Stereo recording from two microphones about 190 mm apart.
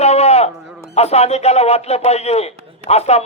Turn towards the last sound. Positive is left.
turn(degrees=35)  # may be behind; listen again after turning